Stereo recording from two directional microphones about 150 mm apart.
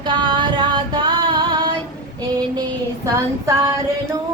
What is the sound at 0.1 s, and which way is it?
Female singing, 30° right (ahead or behind).